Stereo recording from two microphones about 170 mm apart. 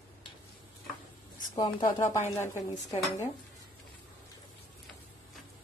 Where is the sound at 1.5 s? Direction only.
20° left (ahead or behind).